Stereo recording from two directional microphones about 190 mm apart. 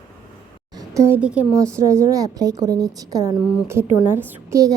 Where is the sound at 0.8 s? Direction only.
15° right (ahead or behind).